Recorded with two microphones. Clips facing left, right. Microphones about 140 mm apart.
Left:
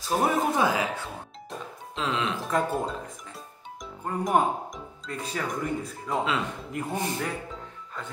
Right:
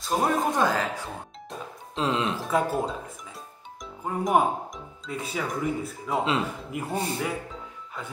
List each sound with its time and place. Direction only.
0.0 s speech: 5° left (ahead or behind)
2.0 s speech: 35° right (ahead or behind)
2.4 s speech: centre (ahead or behind)